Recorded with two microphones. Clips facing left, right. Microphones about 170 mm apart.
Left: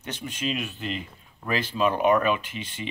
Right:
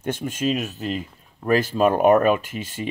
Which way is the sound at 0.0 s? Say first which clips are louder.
Right 7 dB; 50° right (ahead or behind).